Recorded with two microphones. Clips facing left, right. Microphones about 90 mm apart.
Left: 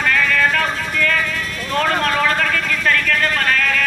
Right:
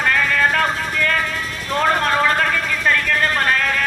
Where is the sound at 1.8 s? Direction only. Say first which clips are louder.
Right 1 dB; 25° right (ahead or behind).